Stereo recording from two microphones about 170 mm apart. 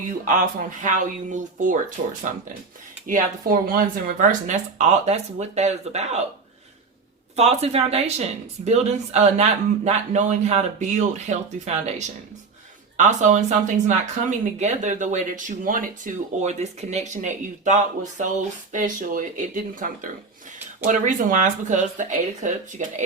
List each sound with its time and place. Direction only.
0.3 s speech: 50° right (ahead or behind)
3.1 s speech: 55° right (ahead or behind)
7.3 s speech: 40° right (ahead or behind)